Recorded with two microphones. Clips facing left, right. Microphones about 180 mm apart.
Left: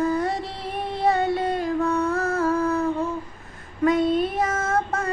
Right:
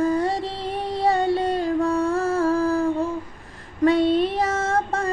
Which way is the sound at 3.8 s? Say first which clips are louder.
Right 2 dB; 30° right (ahead or behind).